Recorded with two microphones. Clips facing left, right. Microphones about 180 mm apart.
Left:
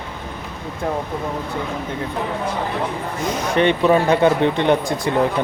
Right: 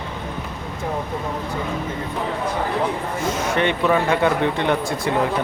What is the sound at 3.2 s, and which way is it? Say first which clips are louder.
Speech: left 4 dB; 20° left (ahead or behind).